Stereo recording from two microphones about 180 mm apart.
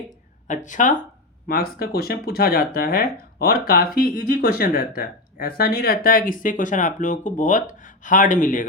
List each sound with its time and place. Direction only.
0.4 s speech: 45° left (ahead or behind)
1.5 s speech: 55° left (ahead or behind)